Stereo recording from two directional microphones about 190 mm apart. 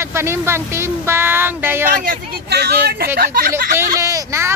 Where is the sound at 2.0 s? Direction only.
55° right (ahead or behind).